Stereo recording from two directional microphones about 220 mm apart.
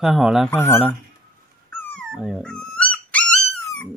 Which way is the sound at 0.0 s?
Centre (ahead or behind).